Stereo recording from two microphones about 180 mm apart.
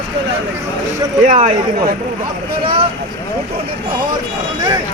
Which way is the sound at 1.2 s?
40° right (ahead or behind).